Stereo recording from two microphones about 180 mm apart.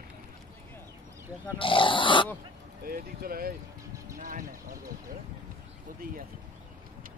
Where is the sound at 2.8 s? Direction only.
55° right (ahead or behind).